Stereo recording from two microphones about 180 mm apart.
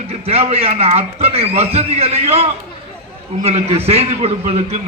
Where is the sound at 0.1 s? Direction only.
35° right (ahead or behind).